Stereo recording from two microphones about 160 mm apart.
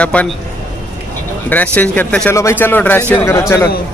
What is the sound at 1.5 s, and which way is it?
Speech, 10° left (ahead or behind).